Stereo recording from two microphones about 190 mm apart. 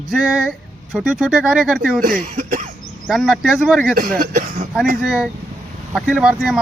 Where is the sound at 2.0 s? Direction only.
45° right (ahead or behind).